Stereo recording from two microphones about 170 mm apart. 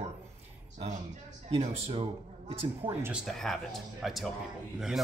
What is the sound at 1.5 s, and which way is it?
Speech, 35° right (ahead or behind).